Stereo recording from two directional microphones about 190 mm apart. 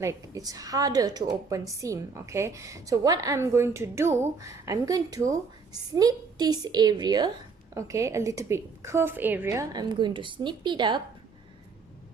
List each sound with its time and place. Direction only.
0.0 s a woman's voice: 15° right (ahead or behind)